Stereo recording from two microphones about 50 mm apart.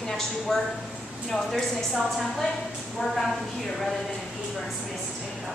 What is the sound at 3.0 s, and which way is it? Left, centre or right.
Speech, centre.